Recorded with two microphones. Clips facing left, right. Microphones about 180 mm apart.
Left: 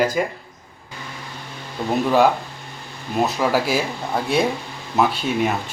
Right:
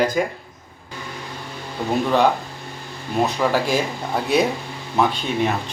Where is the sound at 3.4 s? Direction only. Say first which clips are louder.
Even; 5° left (ahead or behind).